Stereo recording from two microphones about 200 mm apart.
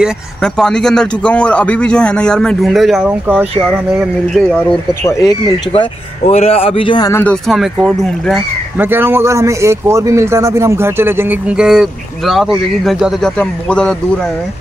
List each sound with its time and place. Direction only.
0.0 s a man's voice: 5° left (ahead or behind)
5.0 s speech: 15° left (ahead or behind)
5.7 s speech: 30° left (ahead or behind); by 7.3 s 15° left (ahead or behind)
7.4 s a man's voice: centre (ahead or behind)